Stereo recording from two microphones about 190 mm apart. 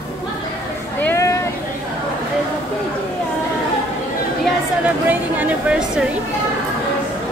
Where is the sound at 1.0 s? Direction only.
15° left (ahead or behind).